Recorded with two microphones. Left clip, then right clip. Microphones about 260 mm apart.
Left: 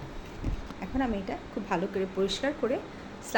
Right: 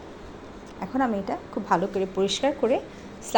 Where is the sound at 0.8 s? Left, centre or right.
Centre.